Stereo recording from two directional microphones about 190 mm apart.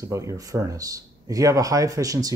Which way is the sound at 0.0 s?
15° right (ahead or behind).